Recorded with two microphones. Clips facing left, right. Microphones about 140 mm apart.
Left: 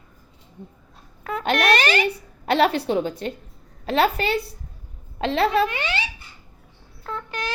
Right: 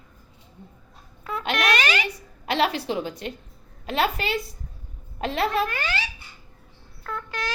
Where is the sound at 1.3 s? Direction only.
55° left (ahead or behind).